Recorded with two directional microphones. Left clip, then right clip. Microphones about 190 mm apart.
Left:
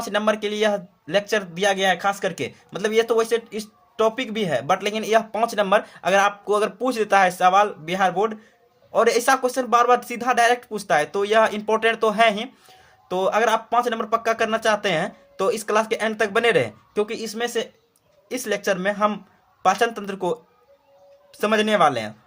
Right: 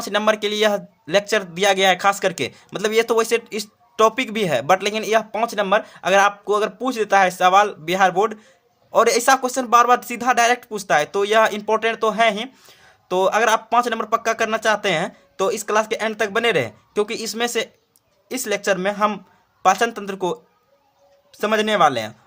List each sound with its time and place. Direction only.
0.0 s speech: 20° right (ahead or behind)
17.0 s speech: 25° right (ahead or behind)